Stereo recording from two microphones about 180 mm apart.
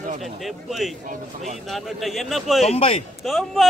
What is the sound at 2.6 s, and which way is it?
Speech, 35° left (ahead or behind).